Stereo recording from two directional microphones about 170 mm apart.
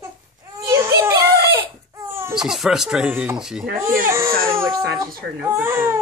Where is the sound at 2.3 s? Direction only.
Centre (ahead or behind).